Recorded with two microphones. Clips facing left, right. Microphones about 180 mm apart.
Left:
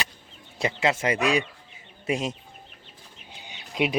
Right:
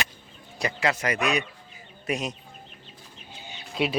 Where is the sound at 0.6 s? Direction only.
25° left (ahead or behind).